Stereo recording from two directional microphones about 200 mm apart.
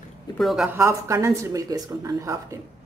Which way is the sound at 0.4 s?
Centre (ahead or behind).